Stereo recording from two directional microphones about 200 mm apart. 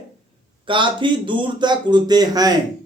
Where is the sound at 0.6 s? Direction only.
25° right (ahead or behind).